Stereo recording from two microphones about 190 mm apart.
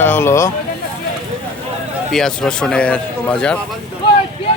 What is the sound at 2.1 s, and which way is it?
A man's voice, 5° left (ahead or behind).